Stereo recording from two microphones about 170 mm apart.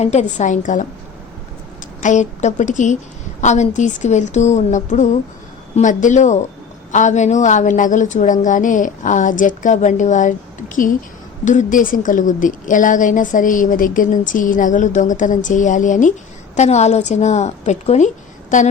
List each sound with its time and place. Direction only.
0.0 s a woman's voice: 45° left (ahead or behind)
11.4 s a woman's voice: 50° left (ahead or behind)